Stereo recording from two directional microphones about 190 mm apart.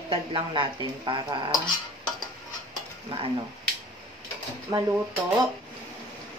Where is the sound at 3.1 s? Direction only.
30° right (ahead or behind).